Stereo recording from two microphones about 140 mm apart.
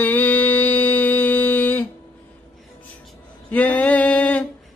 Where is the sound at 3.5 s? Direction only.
10° left (ahead or behind).